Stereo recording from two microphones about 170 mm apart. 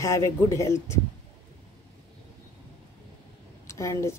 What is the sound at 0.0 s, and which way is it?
Speech, 15° left (ahead or behind).